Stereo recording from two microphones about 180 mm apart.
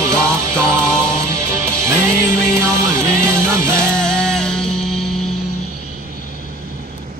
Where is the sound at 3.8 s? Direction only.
5° left (ahead or behind).